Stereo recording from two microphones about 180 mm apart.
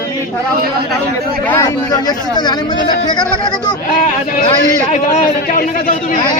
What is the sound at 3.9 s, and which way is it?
A man's voice, 50° left (ahead or behind).